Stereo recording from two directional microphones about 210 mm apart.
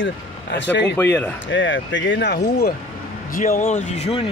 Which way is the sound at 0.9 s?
10° left (ahead or behind).